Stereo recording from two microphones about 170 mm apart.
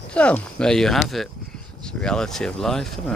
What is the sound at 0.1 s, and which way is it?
Speech, 5° left (ahead or behind).